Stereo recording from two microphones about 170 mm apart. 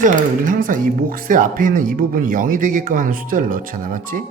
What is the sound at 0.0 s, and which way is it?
Speech, 55° right (ahead or behind).